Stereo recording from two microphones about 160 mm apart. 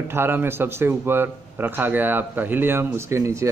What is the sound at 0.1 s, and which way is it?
A man's voice, 15° right (ahead or behind).